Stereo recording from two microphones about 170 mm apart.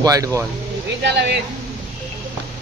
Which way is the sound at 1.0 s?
85° right.